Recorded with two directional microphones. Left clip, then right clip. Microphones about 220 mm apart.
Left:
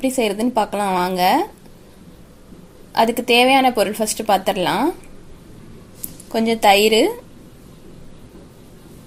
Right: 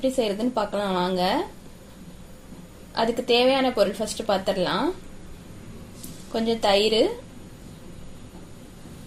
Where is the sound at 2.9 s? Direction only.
30° left (ahead or behind).